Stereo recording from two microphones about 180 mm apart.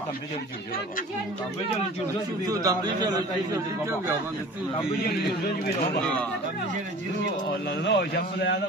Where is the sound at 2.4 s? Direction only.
20° right (ahead or behind).